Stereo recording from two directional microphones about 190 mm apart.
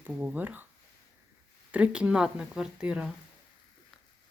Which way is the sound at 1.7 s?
5° right (ahead or behind).